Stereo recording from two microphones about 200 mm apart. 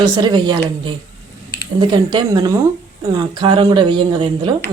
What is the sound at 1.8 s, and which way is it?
Speech, 20° right (ahead or behind).